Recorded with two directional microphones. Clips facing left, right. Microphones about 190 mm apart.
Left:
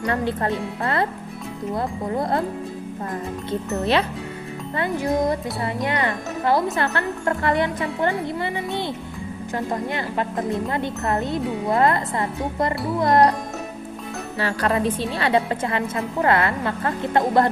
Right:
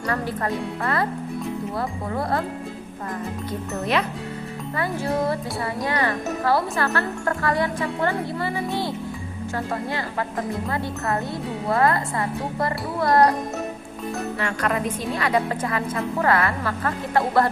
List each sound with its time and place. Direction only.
0.0 s speech: 25° left (ahead or behind)
4.8 s speech: 15° left (ahead or behind)
10.7 s speech: 20° left (ahead or behind)
14.3 s speech: 30° left (ahead or behind)